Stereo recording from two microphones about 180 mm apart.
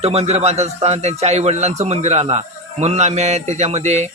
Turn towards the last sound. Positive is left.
turn(degrees=-40)  # may be behind; listen again after turning